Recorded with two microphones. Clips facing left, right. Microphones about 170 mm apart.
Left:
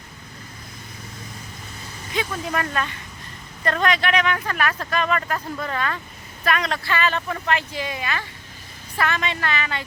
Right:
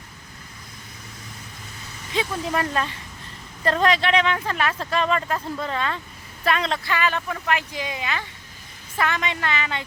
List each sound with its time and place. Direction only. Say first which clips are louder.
2.1 s speech: right 1 dB; 30° right (ahead or behind)